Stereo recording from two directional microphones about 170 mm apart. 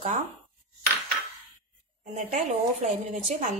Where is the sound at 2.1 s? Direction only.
40° right (ahead or behind).